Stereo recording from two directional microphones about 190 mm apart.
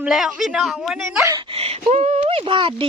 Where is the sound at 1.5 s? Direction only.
30° right (ahead or behind).